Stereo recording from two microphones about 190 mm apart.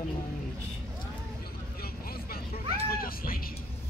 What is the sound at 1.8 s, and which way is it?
Vehicle, 55° left (ahead or behind).